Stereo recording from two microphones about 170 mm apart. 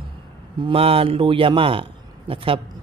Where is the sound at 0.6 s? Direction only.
35° right (ahead or behind).